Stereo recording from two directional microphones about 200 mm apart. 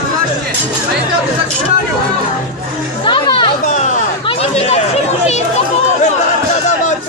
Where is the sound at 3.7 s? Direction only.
40° left (ahead or behind).